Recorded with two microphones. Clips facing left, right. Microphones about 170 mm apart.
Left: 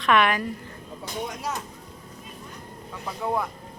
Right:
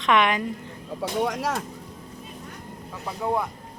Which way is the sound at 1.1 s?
85° right.